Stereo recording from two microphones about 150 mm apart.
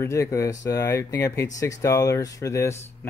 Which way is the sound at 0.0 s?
20° left (ahead or behind).